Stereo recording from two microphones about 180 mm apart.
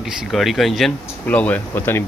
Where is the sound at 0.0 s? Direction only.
Centre (ahead or behind).